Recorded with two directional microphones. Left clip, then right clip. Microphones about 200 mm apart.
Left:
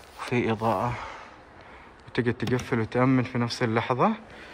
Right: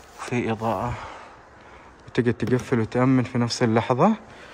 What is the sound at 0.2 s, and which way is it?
Speech, 10° right (ahead or behind).